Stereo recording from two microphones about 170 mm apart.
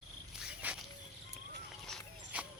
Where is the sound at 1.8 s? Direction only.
Centre (ahead or behind).